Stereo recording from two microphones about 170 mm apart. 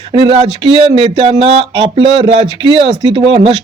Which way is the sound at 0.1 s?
35° right (ahead or behind).